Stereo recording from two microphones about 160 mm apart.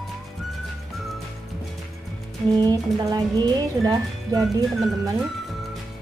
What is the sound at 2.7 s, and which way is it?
Speech, 25° right (ahead or behind).